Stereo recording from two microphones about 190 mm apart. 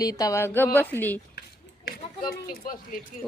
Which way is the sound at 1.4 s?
50° left (ahead or behind).